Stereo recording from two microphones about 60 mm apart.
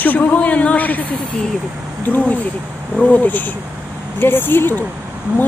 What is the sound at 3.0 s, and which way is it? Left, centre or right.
A woman's voice, left.